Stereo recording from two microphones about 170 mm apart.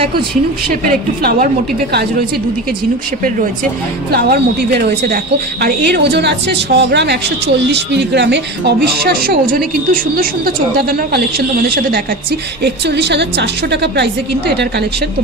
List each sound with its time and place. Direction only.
0.8 s a woman's voice: 60° right (ahead or behind)
4.1 s a woman's voice: 70° right (ahead or behind); by 14.0 s 85° right